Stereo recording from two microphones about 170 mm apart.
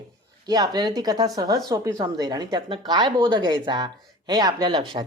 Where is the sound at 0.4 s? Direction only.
25° right (ahead or behind).